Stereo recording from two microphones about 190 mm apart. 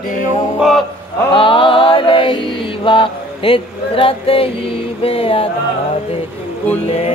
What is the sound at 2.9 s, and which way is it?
Speech, 25° left (ahead or behind).